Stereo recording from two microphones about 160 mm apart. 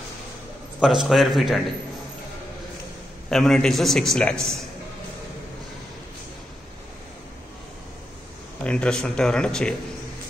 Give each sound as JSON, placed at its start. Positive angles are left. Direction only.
{"t": 0.7, "sound": "a man's voice", "side_deg": -5}
{"t": 3.3, "sound": "a man's voice", "side_deg": 0}
{"t": 8.6, "sound": "a man's voice", "side_deg": 5}